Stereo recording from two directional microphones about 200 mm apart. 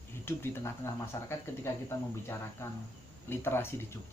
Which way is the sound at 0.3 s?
15° left (ahead or behind).